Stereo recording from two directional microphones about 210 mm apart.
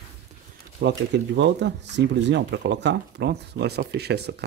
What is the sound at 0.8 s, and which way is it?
A man's voice, 55° right (ahead or behind).